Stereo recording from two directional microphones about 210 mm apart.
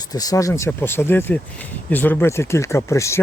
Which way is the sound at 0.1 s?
15° left (ahead or behind).